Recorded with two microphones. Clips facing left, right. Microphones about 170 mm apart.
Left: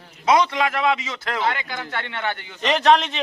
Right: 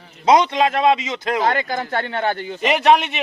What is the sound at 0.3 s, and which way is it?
A man's voice, 25° right (ahead or behind).